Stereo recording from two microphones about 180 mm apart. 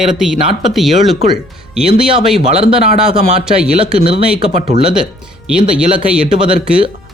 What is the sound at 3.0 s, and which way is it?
Speech, 5° right (ahead or behind).